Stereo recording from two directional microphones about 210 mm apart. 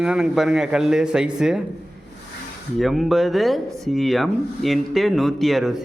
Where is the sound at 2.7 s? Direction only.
Centre (ahead or behind).